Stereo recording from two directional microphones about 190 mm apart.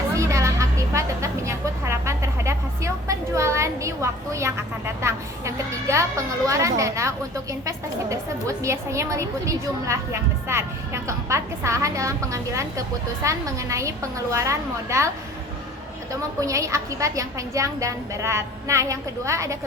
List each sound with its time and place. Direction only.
0.2 s a sound: 15° right (ahead or behind)
5.0 s a woman's voice: 15° right (ahead or behind)
16.4 s a woman's voice: 15° right (ahead or behind)